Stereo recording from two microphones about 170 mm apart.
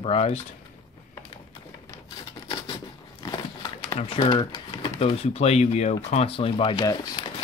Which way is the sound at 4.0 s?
35° left (ahead or behind).